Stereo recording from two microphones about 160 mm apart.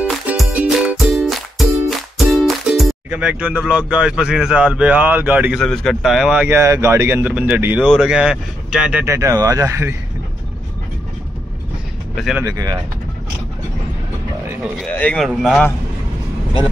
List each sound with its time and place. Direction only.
0.1 s music: centre (ahead or behind)
5.6 s speech: centre (ahead or behind)
9.0 s speech: 15° right (ahead or behind)
12.4 s speech: 20° right (ahead or behind)
14.8 s speech: 5° left (ahead or behind)